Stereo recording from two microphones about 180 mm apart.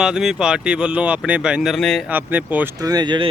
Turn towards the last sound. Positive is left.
turn(degrees=-25)  # may be behind; listen again after turning